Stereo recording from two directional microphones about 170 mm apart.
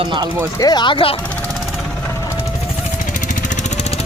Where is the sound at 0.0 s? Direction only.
30° right (ahead or behind).